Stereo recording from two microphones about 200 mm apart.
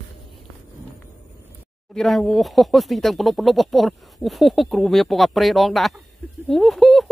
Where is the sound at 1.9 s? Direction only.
Centre (ahead or behind).